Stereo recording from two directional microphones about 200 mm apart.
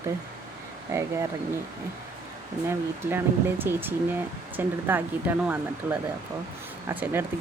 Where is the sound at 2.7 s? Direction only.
10° right (ahead or behind).